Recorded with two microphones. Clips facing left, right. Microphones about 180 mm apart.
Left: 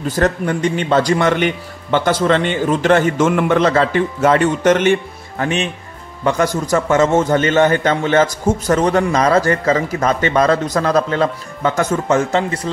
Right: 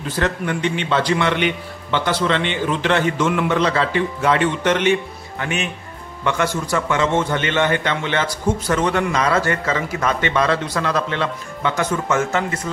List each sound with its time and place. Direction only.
0.1 s a man's voice: 45° left (ahead or behind)
5.4 s a man's voice: 35° left (ahead or behind)